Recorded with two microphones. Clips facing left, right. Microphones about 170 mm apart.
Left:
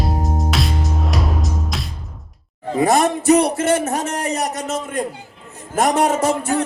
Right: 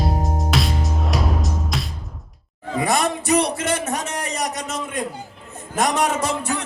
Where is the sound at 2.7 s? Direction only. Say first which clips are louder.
Left 5 dB; 45° left (ahead or behind).